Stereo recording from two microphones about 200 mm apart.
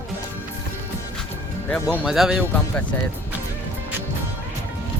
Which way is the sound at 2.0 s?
5° right (ahead or behind).